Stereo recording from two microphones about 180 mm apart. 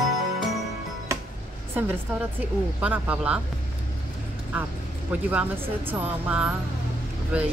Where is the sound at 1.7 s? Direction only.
10° right (ahead or behind).